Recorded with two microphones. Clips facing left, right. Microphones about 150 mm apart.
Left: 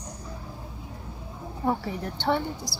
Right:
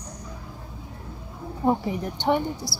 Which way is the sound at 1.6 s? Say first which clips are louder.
Right 4 dB; 15° right (ahead or behind).